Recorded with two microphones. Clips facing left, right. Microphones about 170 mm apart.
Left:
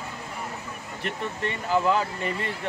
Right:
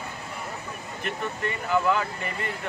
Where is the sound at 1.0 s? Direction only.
30° left (ahead or behind).